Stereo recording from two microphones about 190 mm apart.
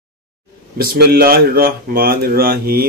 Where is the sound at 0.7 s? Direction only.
55° right (ahead or behind).